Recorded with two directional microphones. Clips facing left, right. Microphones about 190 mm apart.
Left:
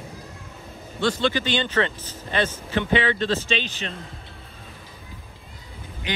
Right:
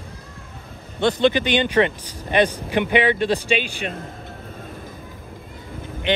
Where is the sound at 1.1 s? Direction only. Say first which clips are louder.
Right 5 dB; 20° right (ahead or behind).